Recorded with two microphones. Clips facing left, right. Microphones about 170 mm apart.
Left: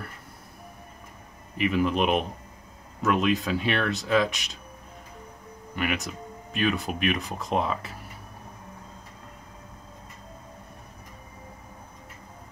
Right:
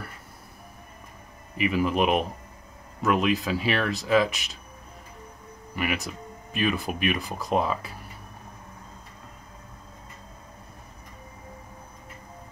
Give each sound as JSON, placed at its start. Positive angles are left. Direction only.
{"t": 1.6, "sound": "speech", "side_deg": -5}
{"t": 5.8, "sound": "speech", "side_deg": 0}